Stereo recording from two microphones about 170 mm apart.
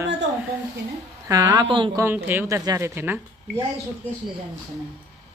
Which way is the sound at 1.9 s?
10° right (ahead or behind).